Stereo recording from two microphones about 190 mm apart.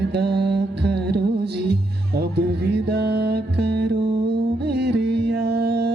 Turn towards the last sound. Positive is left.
turn(degrees=-60)  # may be behind; listen again after turning